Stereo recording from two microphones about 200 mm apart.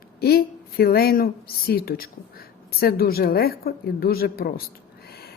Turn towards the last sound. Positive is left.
turn(degrees=55)  # may be behind; listen again after turning